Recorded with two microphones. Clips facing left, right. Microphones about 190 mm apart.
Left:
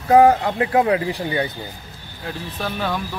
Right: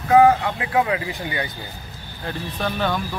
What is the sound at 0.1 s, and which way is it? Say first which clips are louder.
Speech: left 1 dB; 40° left (ahead or behind).